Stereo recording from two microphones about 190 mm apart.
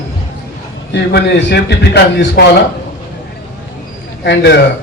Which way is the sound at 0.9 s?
65° left (ahead or behind).